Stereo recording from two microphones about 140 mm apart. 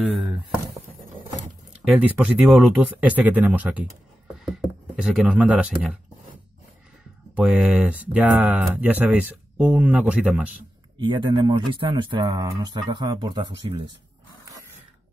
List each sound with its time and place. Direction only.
0.0 s a sound: 10° right (ahead or behind)
1.7 s speech: 10° right (ahead or behind)
7.3 s speech: 5° right (ahead or behind)
11.0 s speech: 35° right (ahead or behind)